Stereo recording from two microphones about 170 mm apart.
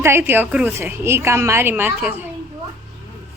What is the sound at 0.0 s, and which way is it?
A woman's voice, 15° right (ahead or behind).